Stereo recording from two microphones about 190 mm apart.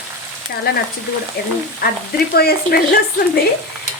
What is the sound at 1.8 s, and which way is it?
Speech, 50° left (ahead or behind).